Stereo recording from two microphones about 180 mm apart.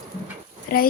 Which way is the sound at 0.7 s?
55° left (ahead or behind).